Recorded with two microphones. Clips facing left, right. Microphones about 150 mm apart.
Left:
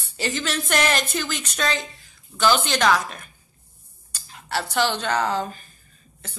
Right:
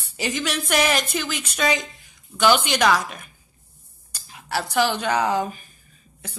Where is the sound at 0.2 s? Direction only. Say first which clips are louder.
Right 1 dB; 10° right (ahead or behind).